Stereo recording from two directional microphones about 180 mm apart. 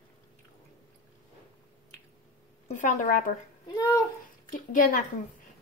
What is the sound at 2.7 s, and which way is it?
Speech, 40° left (ahead or behind).